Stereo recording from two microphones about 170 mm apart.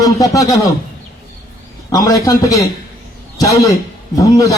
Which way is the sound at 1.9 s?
20° left (ahead or behind).